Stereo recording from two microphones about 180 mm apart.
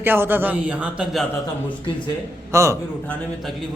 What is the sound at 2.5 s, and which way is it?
Speech, 15° right (ahead or behind).